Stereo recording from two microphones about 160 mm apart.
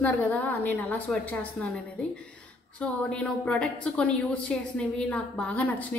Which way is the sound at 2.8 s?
5° left (ahead or behind).